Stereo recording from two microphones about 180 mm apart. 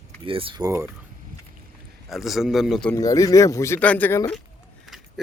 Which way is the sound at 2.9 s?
20° left (ahead or behind).